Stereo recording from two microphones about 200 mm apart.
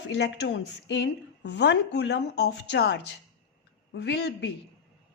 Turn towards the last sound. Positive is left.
turn(degrees=60)  # may be behind; listen again after turning